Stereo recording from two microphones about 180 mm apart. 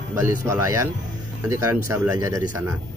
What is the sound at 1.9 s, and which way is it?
Speech, 15° right (ahead or behind).